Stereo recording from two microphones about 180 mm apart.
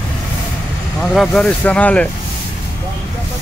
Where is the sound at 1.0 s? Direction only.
5° left (ahead or behind).